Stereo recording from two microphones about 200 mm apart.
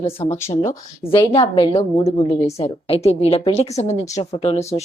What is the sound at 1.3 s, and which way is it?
A woman's voice, 25° left (ahead or behind).